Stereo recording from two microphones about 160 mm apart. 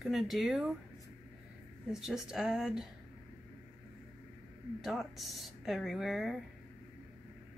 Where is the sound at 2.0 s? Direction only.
5° right (ahead or behind).